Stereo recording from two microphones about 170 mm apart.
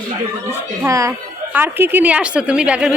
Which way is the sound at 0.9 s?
20° right (ahead or behind).